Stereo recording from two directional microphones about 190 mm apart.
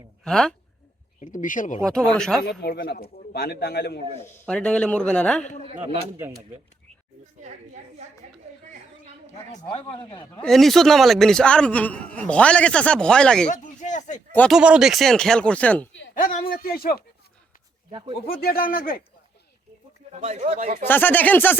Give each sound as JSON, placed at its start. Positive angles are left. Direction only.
{"t": 0.3, "sound": "a man's voice", "side_deg": 5}
{"t": 1.2, "sound": "speech", "side_deg": 45}
{"t": 1.8, "sound": "a man's voice", "side_deg": 5}
{"t": 2.4, "sound": "a man's voice", "side_deg": 60}
{"t": 4.4, "sound": "a man's voice", "side_deg": 5}
{"t": 7.4, "sound": "a woman's voice", "side_deg": -35}
{"t": 9.6, "sound": "speech", "side_deg": 25}
{"t": 10.4, "sound": "a man's voice", "side_deg": 0}
{"t": 13.5, "sound": "speech", "side_deg": 40}
{"t": 14.3, "sound": "a man's voice", "side_deg": 5}
{"t": 16.1, "sound": "speech", "side_deg": 45}
{"t": 18.3, "sound": "speech", "side_deg": 50}
{"t": 20.1, "sound": "speech", "side_deg": -35}
{"t": 20.8, "sound": "speech", "side_deg": 10}